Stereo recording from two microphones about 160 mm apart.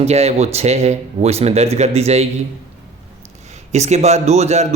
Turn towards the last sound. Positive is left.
turn(degrees=-45)  # may be behind; listen again after turning